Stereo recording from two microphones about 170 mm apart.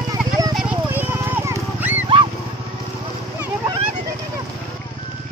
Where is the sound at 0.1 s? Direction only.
20° right (ahead or behind).